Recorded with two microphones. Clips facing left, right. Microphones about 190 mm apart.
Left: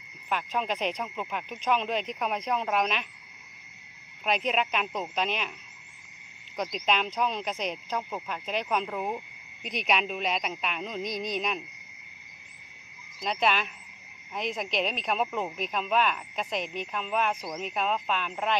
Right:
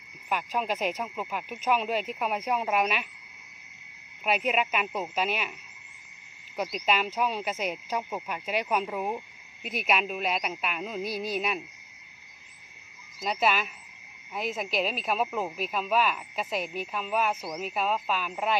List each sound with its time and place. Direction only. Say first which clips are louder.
0.3 s speech: right 1 dB; 5° right (ahead or behind)
4.2 s speech: right 1 dB; 5° right (ahead or behind)
6.5 s speech: right 1 dB; 5° right (ahead or behind)
13.2 s speech: even; 5° right (ahead or behind)